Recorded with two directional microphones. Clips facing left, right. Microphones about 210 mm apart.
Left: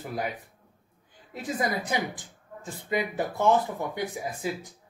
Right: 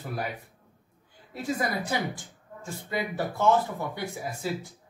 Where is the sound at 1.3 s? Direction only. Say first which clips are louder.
Even; 15° left (ahead or behind).